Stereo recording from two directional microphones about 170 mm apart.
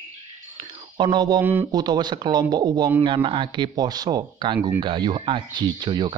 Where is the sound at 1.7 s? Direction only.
25° right (ahead or behind).